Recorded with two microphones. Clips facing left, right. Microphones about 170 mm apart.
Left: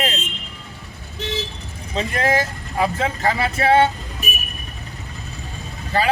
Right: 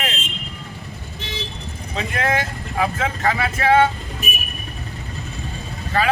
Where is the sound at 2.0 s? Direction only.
35° left (ahead or behind).